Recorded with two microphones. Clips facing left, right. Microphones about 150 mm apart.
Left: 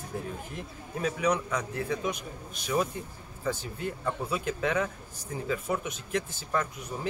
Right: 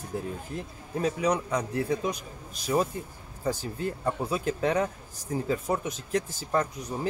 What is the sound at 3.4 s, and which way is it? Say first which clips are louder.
A man's voice: right 3 dB; 40° right (ahead or behind).